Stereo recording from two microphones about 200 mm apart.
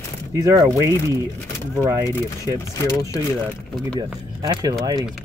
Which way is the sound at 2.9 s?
15° left (ahead or behind).